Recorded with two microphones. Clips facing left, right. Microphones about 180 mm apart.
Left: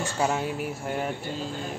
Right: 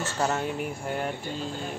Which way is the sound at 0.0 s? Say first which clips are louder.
Left 1 dB; 5° left (ahead or behind).